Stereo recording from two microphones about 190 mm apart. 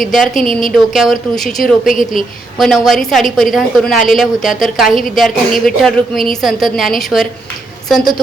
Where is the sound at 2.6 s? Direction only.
Centre (ahead or behind).